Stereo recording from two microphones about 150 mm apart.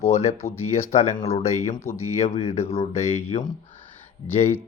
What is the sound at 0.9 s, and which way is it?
Speech, 50° left (ahead or behind).